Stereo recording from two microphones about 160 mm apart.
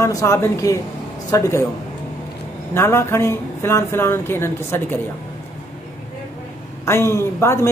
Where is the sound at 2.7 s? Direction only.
15° left (ahead or behind).